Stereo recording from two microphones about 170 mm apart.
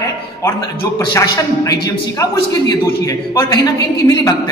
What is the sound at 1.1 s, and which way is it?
A man's voice, 20° left (ahead or behind).